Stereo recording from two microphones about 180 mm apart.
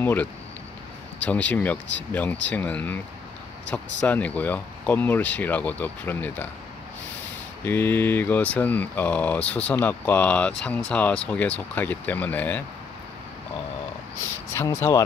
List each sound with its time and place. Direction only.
0.0 s speech: 10° left (ahead or behind)
4.0 s speech: 10° left (ahead or behind)
7.6 s speech: 10° left (ahead or behind)
14.5 s speech: 15° left (ahead or behind)